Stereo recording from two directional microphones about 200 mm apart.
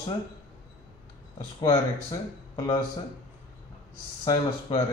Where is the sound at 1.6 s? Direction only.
15° left (ahead or behind).